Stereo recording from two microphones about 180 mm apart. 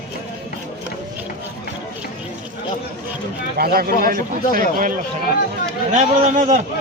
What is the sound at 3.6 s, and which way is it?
A man's voice, 55° right (ahead or behind).